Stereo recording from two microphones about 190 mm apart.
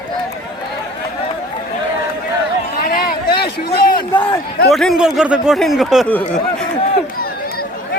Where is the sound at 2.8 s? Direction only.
50° left (ahead or behind).